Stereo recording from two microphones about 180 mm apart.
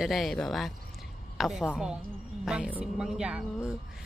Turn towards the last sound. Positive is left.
turn(degrees=-5)  # may be behind; listen again after turning